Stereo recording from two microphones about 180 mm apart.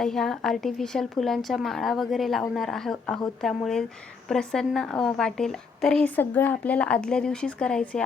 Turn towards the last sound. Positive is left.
turn(degrees=5)  # may be behind; listen again after turning